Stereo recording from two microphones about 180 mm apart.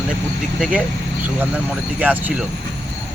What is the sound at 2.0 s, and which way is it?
Speech, 10° right (ahead or behind).